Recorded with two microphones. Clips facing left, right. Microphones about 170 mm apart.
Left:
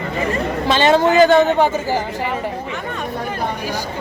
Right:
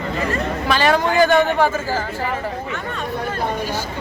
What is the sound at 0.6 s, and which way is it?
A woman's voice, 20° left (ahead or behind).